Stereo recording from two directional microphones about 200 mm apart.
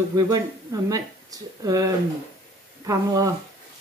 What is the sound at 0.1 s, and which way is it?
Speech, 15° right (ahead or behind).